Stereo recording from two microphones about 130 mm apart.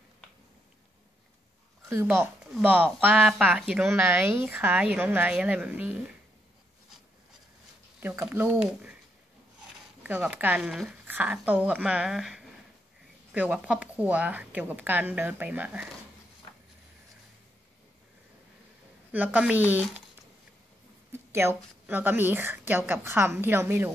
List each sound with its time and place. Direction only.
1.9 s a woman's voice: 20° right (ahead or behind)
8.0 s a woman's voice: 10° right (ahead or behind)
10.0 s a woman's voice: 10° right (ahead or behind)
19.1 s a woman's voice: 10° right (ahead or behind)
21.1 s a woman's voice: 20° right (ahead or behind)